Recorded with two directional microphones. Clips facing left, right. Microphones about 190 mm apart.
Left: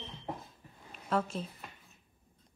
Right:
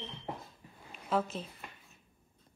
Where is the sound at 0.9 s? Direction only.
Centre (ahead or behind).